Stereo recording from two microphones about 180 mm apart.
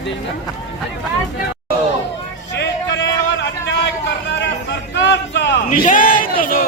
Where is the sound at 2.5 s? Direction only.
75° left (ahead or behind).